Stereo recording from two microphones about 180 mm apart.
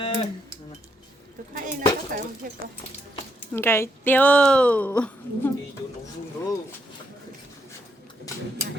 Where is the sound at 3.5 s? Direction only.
15° left (ahead or behind).